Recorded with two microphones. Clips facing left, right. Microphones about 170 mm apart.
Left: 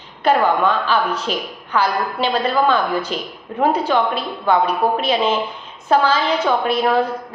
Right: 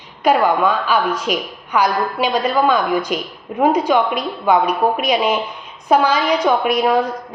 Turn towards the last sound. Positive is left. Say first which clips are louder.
# right 1 dB
turn(degrees=-15)  # may be behind; listen again after turning